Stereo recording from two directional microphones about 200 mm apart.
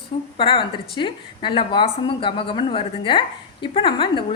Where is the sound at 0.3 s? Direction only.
25° left (ahead or behind).